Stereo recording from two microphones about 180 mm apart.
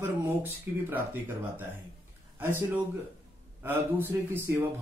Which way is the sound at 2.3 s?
10° right (ahead or behind).